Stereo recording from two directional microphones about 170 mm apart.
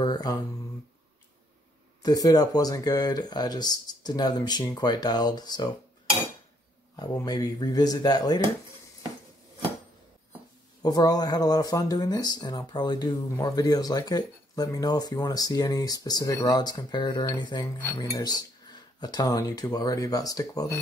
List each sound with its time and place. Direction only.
0.0 s mantra: 25° left (ahead or behind)
2.0 s speech: 20° left (ahead or behind)
7.0 s speech: 20° left (ahead or behind)
10.8 s speech: 20° left (ahead or behind)
17.7 s speech: 15° left (ahead or behind)